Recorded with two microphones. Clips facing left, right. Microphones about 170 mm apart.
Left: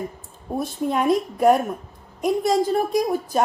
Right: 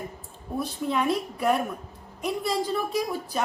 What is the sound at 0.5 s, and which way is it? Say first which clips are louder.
A woman's voice: left 4 dB; 45° left (ahead or behind).